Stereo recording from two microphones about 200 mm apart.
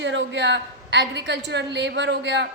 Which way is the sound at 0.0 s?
65° right (ahead or behind).